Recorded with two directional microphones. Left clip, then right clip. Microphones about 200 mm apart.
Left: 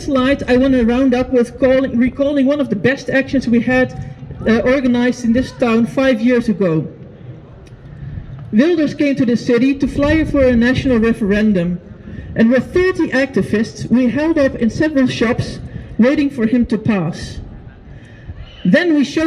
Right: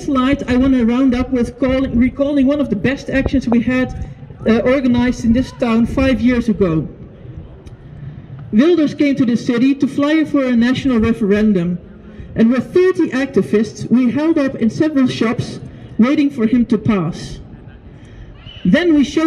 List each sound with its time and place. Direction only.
0.0 s a man's voice: 25° left (ahead or behind)
8.5 s a man's voice: 15° left (ahead or behind)
18.7 s a man's voice: 15° left (ahead or behind)